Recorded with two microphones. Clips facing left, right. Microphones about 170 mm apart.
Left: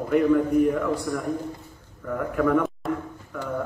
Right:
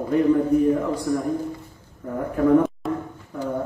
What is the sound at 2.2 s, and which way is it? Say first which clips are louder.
Speech: right 4 dB; 30° right (ahead or behind).